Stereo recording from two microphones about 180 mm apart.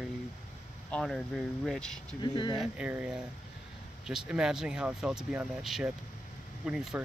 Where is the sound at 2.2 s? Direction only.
25° left (ahead or behind).